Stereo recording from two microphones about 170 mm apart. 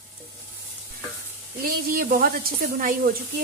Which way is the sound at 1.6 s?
60° right (ahead or behind).